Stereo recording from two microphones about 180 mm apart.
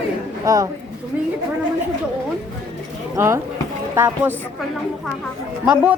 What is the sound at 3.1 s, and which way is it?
Speech, 15° right (ahead or behind).